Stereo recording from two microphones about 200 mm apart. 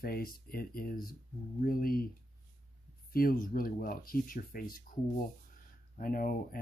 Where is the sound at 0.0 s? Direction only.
45° left (ahead or behind).